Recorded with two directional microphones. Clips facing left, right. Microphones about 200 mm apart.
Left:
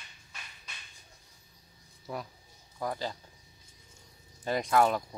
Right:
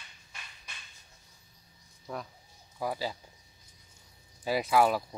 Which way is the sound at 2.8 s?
5° right (ahead or behind).